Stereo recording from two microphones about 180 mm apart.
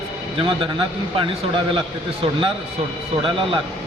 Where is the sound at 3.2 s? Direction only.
25° right (ahead or behind).